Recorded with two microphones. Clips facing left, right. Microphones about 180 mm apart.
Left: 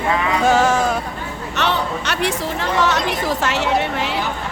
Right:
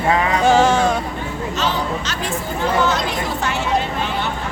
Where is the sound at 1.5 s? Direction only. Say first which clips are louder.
Left 2 dB; 65° left (ahead or behind).